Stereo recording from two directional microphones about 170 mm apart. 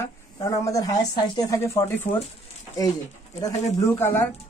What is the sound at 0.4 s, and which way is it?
Speech, 20° left (ahead or behind).